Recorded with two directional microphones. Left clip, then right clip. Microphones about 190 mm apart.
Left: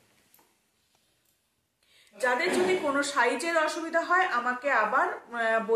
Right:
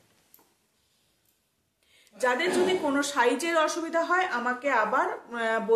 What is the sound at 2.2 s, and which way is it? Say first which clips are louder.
A woman's voice: right 1 dB; 45° right (ahead or behind).